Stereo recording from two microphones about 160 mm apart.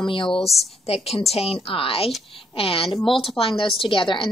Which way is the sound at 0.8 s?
40° left (ahead or behind).